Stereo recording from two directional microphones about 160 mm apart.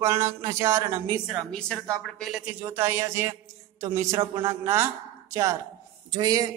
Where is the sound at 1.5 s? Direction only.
5° left (ahead or behind); by 4.9 s 15° right (ahead or behind).